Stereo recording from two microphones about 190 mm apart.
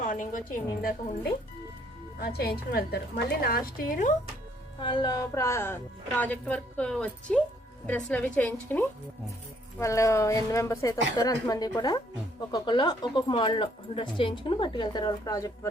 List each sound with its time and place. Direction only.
0.0 s a woman's voice: 40° left (ahead or behind)
2.2 s a woman's voice: 55° left (ahead or behind)
4.8 s a woman's voice: 25° left (ahead or behind)